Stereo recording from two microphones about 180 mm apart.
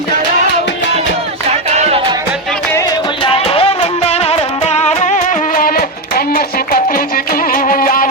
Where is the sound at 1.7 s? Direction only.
35° right (ahead or behind).